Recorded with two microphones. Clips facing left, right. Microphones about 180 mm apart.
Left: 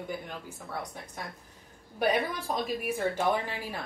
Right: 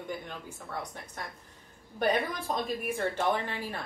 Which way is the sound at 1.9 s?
10° left (ahead or behind).